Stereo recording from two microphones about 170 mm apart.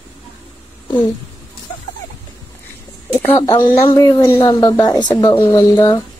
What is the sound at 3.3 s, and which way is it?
Speech, 20° left (ahead or behind).